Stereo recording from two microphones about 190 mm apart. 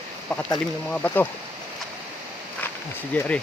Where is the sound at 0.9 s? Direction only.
5° left (ahead or behind).